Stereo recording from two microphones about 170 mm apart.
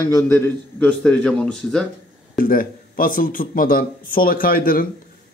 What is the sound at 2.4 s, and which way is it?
Speech, 55° left (ahead or behind).